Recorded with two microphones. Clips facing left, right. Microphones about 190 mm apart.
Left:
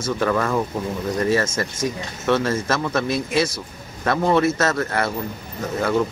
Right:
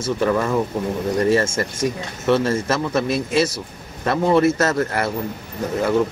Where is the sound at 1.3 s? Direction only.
30° right (ahead or behind).